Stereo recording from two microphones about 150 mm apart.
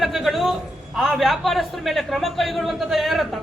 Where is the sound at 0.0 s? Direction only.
Centre (ahead or behind).